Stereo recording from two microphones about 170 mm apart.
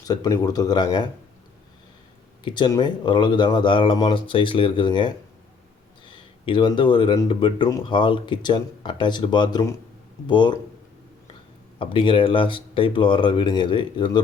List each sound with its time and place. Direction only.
0.1 s speech: 20° left (ahead or behind)
2.4 s speech: 25° left (ahead or behind)
6.4 s speech: 30° left (ahead or behind)
11.8 s speech: 30° left (ahead or behind)